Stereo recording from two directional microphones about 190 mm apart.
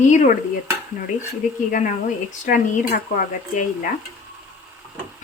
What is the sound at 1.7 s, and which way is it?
Speech, 40° left (ahead or behind).